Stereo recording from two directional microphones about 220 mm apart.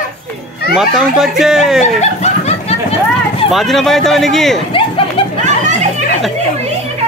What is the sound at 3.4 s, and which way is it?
Speech, centre (ahead or behind).